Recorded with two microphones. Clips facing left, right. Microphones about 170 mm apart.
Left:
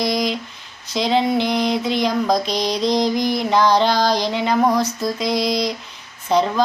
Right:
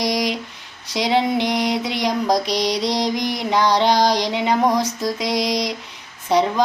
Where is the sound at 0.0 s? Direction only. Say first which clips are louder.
Left 1 dB; 15° right (ahead or behind).